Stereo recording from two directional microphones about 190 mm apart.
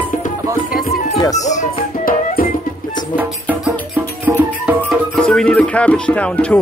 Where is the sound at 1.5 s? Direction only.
45° left (ahead or behind).